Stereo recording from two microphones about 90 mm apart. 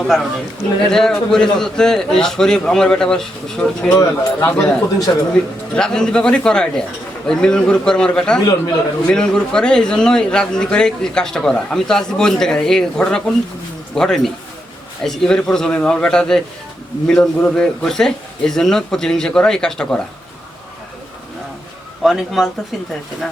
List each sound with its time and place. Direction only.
0.0 s a man's voice: centre (ahead or behind)
3.9 s speech: 40° left (ahead or behind)
4.5 s a man's voice: 10° left (ahead or behind)
22.0 s speech: centre (ahead or behind)